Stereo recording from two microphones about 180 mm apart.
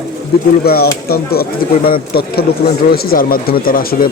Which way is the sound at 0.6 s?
60° left (ahead or behind).